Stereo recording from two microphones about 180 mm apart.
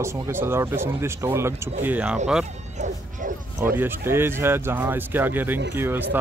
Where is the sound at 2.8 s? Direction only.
45° right (ahead or behind).